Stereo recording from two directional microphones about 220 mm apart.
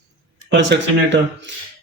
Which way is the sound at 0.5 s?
55° right (ahead or behind).